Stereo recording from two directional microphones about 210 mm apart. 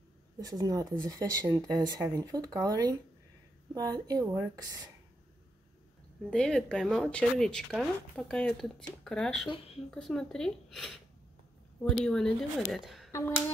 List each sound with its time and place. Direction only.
0.4 s speech: 15° right (ahead or behind)
6.3 s speech: 5° left (ahead or behind)
12.0 s speech: 5° left (ahead or behind)